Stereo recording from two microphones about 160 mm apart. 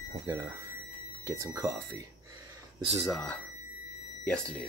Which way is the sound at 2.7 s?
35° right (ahead or behind).